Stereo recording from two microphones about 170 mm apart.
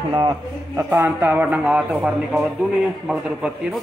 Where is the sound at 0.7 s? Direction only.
15° right (ahead or behind).